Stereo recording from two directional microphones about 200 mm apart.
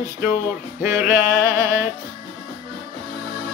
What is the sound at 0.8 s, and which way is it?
Music, 10° right (ahead or behind).